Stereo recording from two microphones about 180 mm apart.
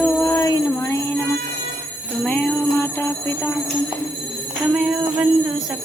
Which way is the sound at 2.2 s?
5° left (ahead or behind).